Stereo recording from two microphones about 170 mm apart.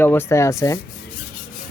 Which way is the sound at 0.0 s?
15° left (ahead or behind).